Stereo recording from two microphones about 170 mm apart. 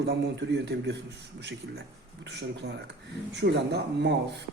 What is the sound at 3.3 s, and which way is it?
Speech, 85° right.